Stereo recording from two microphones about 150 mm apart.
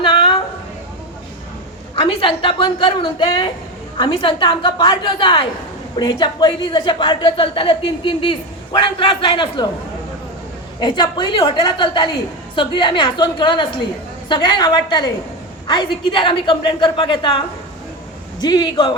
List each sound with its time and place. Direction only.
0.0 s a sound: 30° left (ahead or behind)
2.0 s a woman's voice: 35° left (ahead or behind)
10.8 s a woman's voice: 30° left (ahead or behind)